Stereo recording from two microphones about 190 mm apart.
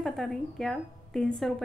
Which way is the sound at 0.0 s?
Centre (ahead or behind).